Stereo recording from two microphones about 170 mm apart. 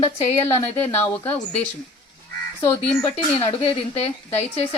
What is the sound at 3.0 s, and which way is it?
Speech, 35° left (ahead or behind).